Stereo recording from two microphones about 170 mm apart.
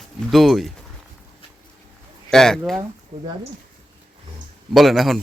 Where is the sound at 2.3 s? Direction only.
5° left (ahead or behind).